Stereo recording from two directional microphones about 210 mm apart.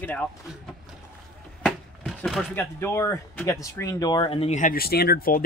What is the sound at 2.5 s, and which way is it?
Speech, 10° left (ahead or behind).